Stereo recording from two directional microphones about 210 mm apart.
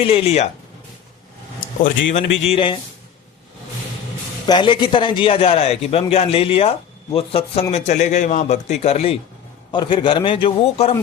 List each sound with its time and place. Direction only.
0.0 s a man's voice: 25° left (ahead or behind)
2.1 s a man's voice: 30° left (ahead or behind)
4.4 s a man's voice: 20° left (ahead or behind)